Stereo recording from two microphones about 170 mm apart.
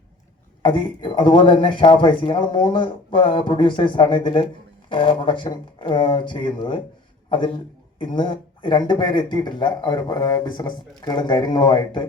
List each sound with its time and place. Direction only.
0.6 s a man's voice: 30° left (ahead or behind)